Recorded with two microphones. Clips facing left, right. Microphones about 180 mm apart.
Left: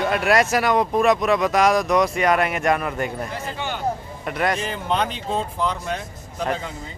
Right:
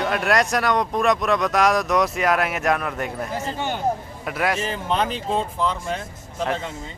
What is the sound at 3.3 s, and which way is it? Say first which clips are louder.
Speech: right 2 dB; 45° right (ahead or behind).